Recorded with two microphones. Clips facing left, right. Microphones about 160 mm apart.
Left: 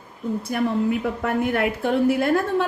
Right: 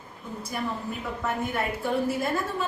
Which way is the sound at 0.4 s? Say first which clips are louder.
Left 9 dB; 65° left (ahead or behind).